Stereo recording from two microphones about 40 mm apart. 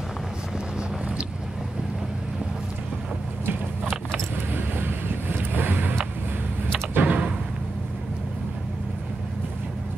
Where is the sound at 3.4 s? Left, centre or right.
Right.